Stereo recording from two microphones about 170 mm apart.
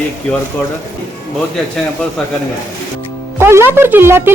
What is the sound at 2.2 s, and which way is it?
Speech, centre (ahead or behind).